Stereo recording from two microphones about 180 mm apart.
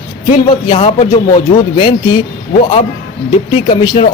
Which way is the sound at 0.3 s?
35° left (ahead or behind).